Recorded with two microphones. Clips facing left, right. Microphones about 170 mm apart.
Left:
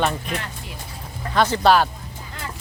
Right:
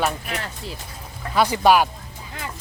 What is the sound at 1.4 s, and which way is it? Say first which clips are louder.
Speech: even; 10° right (ahead or behind).